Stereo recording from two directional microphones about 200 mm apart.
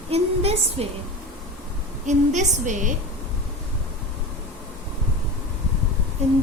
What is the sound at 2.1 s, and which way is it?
Speech, 40° right (ahead or behind).